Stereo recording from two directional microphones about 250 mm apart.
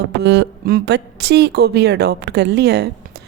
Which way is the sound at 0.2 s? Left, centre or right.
Right.